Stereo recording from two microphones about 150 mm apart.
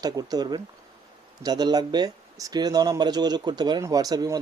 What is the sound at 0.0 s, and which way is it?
Speech, 25° right (ahead or behind).